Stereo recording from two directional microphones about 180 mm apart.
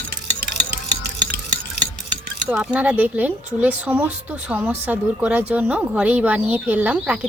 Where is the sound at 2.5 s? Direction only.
5° right (ahead or behind).